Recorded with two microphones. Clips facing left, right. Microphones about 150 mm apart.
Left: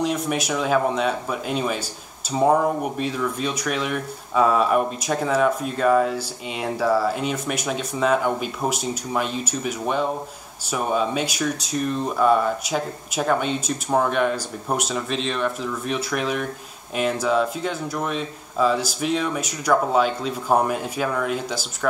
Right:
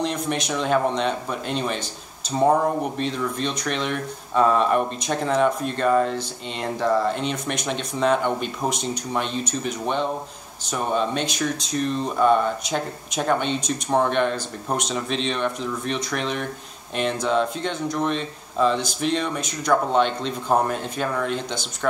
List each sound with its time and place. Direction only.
0.0 s speech: 5° left (ahead or behind)